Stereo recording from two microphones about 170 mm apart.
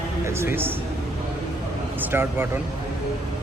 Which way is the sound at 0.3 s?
15° right (ahead or behind).